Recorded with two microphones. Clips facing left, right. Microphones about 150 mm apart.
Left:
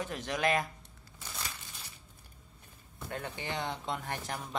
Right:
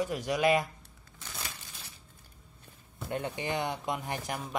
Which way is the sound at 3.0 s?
20° right (ahead or behind).